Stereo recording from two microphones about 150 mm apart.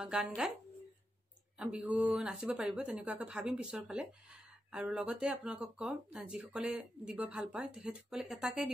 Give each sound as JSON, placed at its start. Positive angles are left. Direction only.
{"t": 0.0, "sound": "speech", "side_deg": -5}
{"t": 1.6, "sound": "speech", "side_deg": -10}